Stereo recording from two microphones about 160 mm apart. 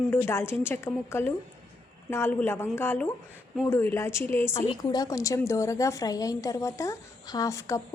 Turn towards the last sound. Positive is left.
turn(degrees=20)  # may be behind; listen again after turning